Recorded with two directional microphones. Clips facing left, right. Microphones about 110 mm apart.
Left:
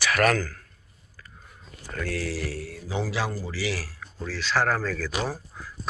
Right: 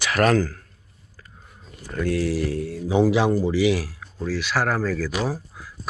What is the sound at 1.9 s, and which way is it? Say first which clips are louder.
A man's voice: right 7 dB; 15° right (ahead or behind).